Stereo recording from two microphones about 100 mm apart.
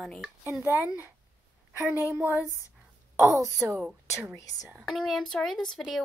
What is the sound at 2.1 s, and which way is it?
Speech, 20° right (ahead or behind).